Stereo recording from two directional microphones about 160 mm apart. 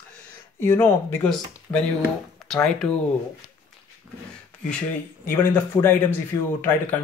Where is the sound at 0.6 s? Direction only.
15° left (ahead or behind).